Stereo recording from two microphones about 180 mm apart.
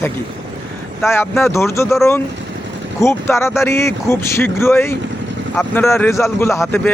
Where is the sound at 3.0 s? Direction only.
15° left (ahead or behind).